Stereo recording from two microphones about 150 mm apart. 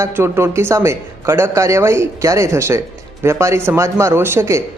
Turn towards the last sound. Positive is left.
turn(degrees=-15)  # may be behind; listen again after turning